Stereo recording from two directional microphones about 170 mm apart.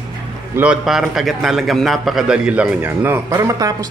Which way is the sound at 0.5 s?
5° right (ahead or behind).